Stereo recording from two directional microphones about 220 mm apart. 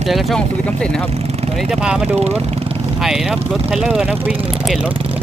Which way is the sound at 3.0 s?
Centre (ahead or behind).